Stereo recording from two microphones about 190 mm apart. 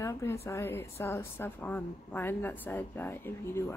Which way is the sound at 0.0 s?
15° left (ahead or behind).